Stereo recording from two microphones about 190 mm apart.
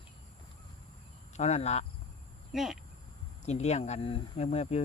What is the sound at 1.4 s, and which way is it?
Speech, 35° left (ahead or behind).